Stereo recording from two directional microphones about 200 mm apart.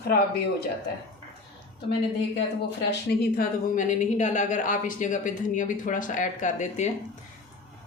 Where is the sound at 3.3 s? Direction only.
40° left (ahead or behind).